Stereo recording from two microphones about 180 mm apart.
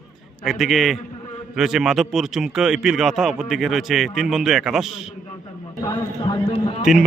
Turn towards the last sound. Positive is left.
turn(degrees=30)  # may be behind; listen again after turning